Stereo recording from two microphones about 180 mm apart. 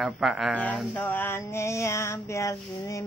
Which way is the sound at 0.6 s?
10° left (ahead or behind).